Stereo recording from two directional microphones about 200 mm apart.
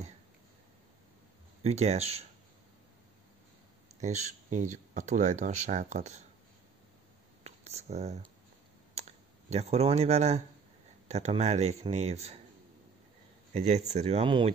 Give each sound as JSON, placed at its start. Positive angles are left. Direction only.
{"t": 1.6, "sound": "speech", "side_deg": -35}
{"t": 4.0, "sound": "speech", "side_deg": -35}
{"t": 7.4, "sound": "speech", "side_deg": -30}
{"t": 9.0, "sound": "clicking", "side_deg": -30}
{"t": 9.5, "sound": "speech", "side_deg": -30}
{"t": 13.5, "sound": "speech", "side_deg": -35}